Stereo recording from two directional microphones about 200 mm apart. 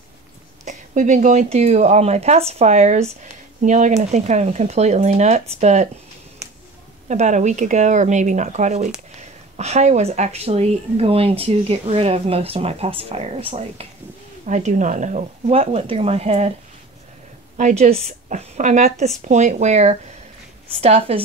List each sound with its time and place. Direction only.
0.7 s speech: 40° right (ahead or behind)
7.1 s speech: 35° right (ahead or behind)
17.6 s speech: 35° right (ahead or behind)